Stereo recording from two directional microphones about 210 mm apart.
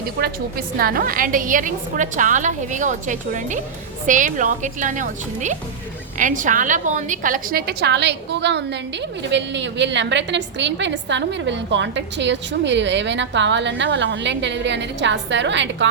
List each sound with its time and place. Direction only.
0.2 s a woman's voice: 45° right (ahead or behind)